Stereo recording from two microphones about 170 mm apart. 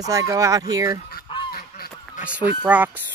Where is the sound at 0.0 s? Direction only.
20° right (ahead or behind).